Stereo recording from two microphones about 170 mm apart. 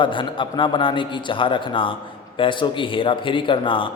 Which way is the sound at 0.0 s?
30° left (ahead or behind).